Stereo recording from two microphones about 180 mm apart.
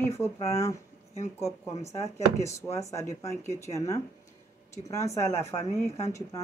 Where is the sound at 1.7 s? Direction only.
35° left (ahead or behind).